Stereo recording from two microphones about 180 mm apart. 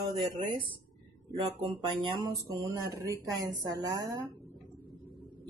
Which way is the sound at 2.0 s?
25° right (ahead or behind).